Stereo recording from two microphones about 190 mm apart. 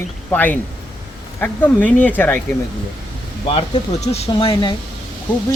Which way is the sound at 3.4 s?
30° left (ahead or behind).